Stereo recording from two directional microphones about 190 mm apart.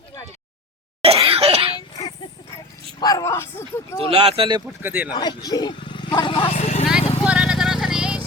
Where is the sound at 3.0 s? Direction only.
20° left (ahead or behind).